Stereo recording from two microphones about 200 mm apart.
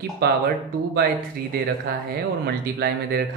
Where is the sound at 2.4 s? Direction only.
55° right (ahead or behind).